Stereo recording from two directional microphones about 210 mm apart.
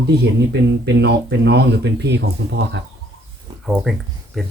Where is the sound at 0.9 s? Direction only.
55° right (ahead or behind).